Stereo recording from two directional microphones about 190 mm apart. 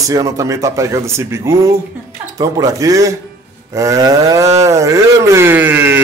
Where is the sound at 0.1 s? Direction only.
15° right (ahead or behind).